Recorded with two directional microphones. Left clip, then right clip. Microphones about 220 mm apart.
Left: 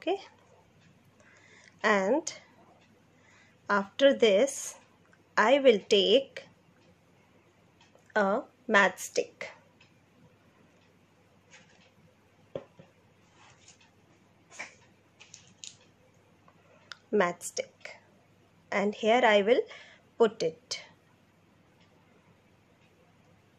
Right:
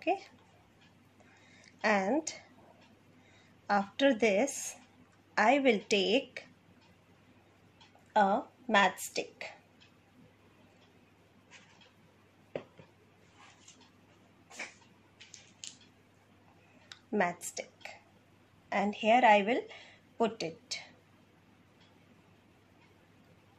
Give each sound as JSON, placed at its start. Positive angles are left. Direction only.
{"t": 0.0, "sound": "a child's voice", "side_deg": 25}
{"t": 1.8, "sound": "a woman's voice", "side_deg": 25}
{"t": 3.6, "sound": "a woman's voice", "side_deg": 25}
{"t": 8.1, "sound": "a woman's voice", "side_deg": 30}
{"t": 16.9, "sound": "a sound", "side_deg": 30}
{"t": 18.7, "sound": "a woman's voice", "side_deg": 30}